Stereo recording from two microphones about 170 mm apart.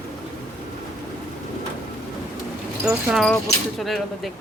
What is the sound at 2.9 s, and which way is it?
Speech, centre (ahead or behind).